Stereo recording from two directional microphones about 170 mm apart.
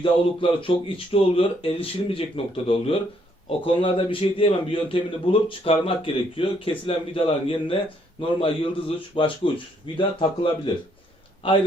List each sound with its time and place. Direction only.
0.0 s a man's voice: 30° left (ahead or behind)